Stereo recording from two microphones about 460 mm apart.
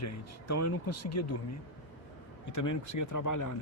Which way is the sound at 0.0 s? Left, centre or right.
Left.